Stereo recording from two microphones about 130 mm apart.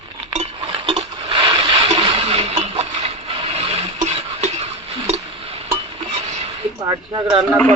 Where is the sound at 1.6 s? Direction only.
50° right (ahead or behind).